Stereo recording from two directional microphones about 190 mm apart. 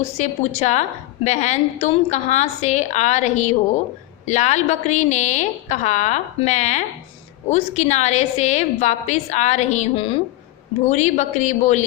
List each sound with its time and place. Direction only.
0.0 s a woman's voice: 35° left (ahead or behind)